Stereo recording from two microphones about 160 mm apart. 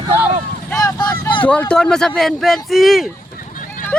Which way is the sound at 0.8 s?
25° left (ahead or behind).